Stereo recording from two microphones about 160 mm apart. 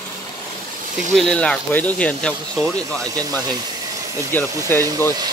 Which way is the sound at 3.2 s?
25° right (ahead or behind).